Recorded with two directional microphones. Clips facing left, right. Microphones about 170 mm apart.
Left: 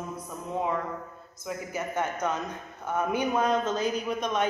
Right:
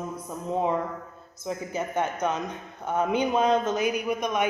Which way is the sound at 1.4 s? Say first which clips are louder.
Right 3 dB; 20° right (ahead or behind).